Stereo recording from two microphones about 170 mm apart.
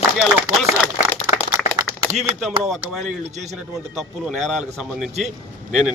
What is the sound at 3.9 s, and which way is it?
A man's voice, centre (ahead or behind).